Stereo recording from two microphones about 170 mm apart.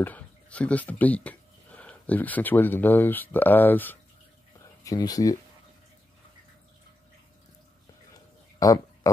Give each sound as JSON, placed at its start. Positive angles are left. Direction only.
{"t": 0.0, "sound": "speech", "side_deg": 10}
{"t": 4.8, "sound": "speech", "side_deg": 20}
{"t": 8.5, "sound": "a sound", "side_deg": 20}